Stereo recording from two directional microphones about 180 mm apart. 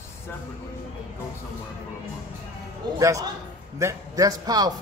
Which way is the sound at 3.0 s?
15° right (ahead or behind).